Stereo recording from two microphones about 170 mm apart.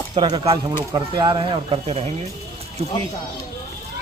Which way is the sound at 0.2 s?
25° right (ahead or behind).